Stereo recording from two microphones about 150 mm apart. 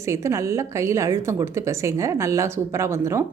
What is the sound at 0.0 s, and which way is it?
A woman's voice, 20° right (ahead or behind).